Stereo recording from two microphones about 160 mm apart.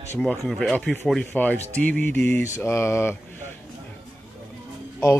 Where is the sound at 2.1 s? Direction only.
10° left (ahead or behind).